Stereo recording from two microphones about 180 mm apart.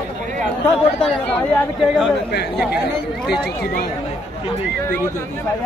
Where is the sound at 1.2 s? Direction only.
5° left (ahead or behind).